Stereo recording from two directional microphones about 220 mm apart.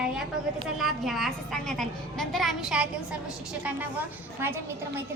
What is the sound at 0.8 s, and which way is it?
A woman's voice, centre (ahead or behind).